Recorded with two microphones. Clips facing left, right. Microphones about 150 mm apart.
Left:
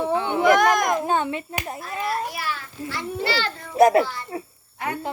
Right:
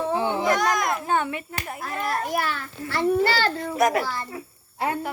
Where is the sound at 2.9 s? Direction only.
50° right (ahead or behind).